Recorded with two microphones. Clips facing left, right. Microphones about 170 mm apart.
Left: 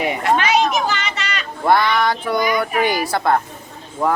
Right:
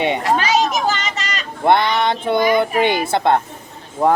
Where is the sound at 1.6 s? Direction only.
25° right (ahead or behind).